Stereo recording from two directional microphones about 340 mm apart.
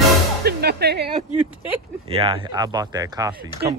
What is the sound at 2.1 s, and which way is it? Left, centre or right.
Speech, centre.